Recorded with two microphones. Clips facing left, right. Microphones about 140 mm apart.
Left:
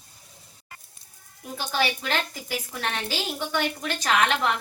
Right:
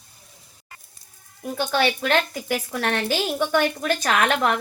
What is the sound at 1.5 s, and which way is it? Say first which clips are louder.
A woman's voice: right 5 dB; 65° right (ahead or behind).